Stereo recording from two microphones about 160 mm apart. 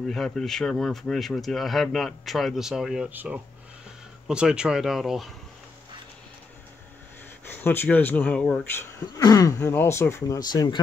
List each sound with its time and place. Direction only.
0.0 s speech: centre (ahead or behind)
7.4 s speech: 10° left (ahead or behind)
9.2 s speech: 20° left (ahead or behind)